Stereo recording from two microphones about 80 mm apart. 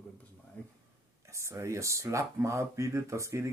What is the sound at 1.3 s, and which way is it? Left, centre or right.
Speech, right.